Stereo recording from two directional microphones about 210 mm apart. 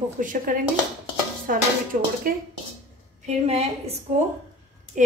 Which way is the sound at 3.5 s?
30° right (ahead or behind).